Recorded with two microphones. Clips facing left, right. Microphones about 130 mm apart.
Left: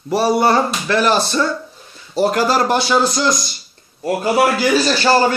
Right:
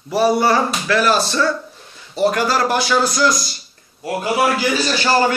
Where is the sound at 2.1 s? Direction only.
35° left (ahead or behind).